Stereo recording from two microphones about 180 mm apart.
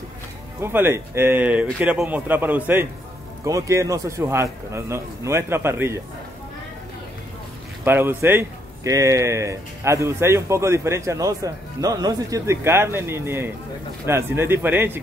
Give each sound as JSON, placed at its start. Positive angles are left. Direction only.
{"t": 0.6, "sound": "speech", "side_deg": -15}
{"t": 7.8, "sound": "speech", "side_deg": -10}